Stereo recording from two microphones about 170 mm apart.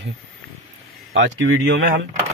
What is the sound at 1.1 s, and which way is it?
Speech, 90° right.